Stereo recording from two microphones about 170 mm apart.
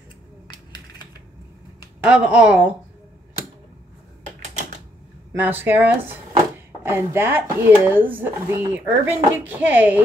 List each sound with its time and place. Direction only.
2.0 s speech: 5° right (ahead or behind)
5.3 s speech: 10° right (ahead or behind)